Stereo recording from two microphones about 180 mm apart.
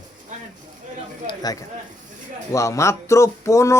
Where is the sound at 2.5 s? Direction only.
15° left (ahead or behind).